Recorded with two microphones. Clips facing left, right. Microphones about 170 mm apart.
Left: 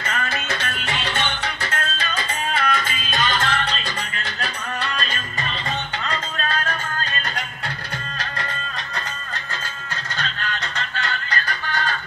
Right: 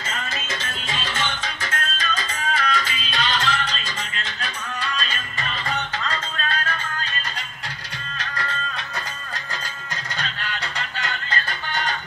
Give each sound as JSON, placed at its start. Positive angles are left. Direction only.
{"t": 0.0, "sound": "music", "side_deg": 65}
{"t": 6.5, "sound": "music", "side_deg": 40}
{"t": 10.1, "sound": "music", "side_deg": -10}